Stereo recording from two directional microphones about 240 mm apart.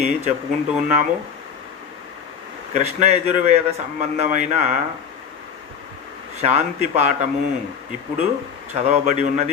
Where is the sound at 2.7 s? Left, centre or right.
Right.